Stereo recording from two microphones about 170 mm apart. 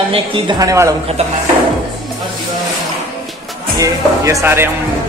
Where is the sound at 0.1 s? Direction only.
30° right (ahead or behind).